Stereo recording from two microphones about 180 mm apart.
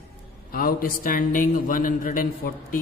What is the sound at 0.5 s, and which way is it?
Speech, 55° left (ahead or behind).